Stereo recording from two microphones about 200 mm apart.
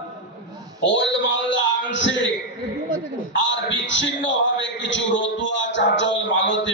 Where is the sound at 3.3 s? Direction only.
65° left (ahead or behind).